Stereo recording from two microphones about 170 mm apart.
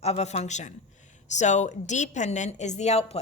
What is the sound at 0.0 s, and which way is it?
A woman's voice, 40° left (ahead or behind).